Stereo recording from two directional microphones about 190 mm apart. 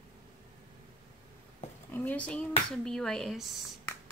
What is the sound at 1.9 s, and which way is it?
Speech, 10° left (ahead or behind).